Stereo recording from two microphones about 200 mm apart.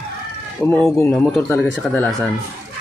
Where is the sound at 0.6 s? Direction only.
10° left (ahead or behind).